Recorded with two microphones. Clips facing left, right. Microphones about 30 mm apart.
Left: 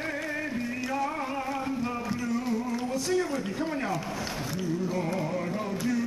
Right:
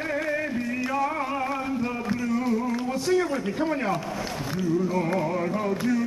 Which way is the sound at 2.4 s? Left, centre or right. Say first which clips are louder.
Right 4 dB; centre.